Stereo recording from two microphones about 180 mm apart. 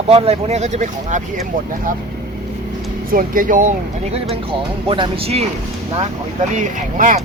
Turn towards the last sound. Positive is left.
turn(degrees=-45)  # may be behind; listen again after turning